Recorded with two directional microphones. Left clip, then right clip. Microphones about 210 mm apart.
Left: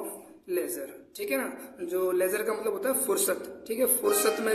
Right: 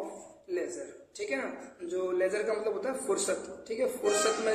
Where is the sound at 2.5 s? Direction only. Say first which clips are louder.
Left 2 dB; 45° left (ahead or behind).